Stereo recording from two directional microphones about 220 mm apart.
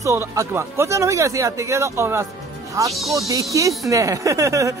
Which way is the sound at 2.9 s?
Centre (ahead or behind).